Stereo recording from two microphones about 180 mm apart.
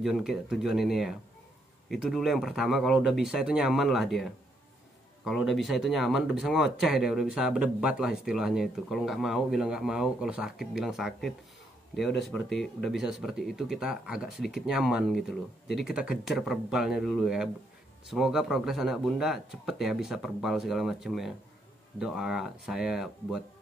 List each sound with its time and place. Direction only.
0.0 s speech: centre (ahead or behind)